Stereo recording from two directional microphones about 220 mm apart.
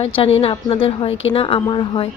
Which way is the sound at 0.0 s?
25° left (ahead or behind).